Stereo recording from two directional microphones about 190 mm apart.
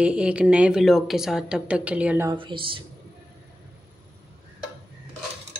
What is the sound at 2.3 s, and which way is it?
Speech, 25° right (ahead or behind).